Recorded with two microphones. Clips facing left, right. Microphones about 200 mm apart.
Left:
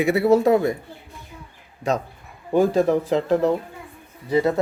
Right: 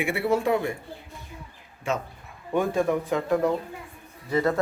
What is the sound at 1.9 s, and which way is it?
Speech, 40° left (ahead or behind).